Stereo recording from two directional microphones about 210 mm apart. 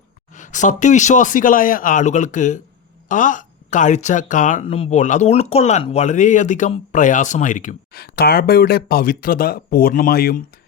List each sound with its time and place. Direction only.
0.3 s speech: 35° left (ahead or behind)